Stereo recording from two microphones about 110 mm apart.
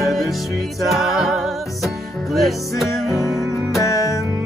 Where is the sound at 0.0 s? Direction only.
Centre (ahead or behind).